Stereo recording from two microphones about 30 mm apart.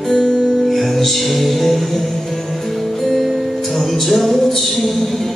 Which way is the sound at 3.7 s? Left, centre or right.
Centre.